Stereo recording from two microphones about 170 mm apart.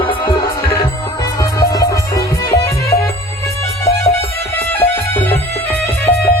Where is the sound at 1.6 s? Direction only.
20° left (ahead or behind).